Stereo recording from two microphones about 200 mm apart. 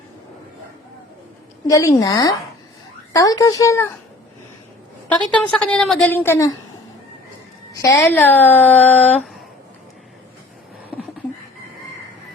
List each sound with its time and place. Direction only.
1.6 s a woman's voice: 15° left (ahead or behind)
5.1 s a woman's voice: 5° left (ahead or behind)
7.7 s a woman's voice: 15° left (ahead or behind)